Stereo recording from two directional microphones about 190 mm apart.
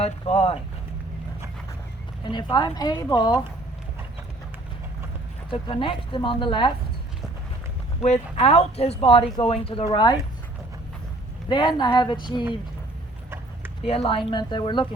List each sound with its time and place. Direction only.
0.0 s speech: 35° left (ahead or behind)
2.2 s speech: 25° left (ahead or behind)
5.5 s speech: 25° left (ahead or behind)
8.0 s speech: 35° left (ahead or behind)
11.4 s speech: 25° left (ahead or behind)
13.8 s speech: 30° left (ahead or behind)